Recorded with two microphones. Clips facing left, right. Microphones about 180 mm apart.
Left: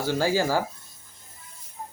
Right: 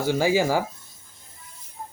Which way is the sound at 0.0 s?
15° right (ahead or behind).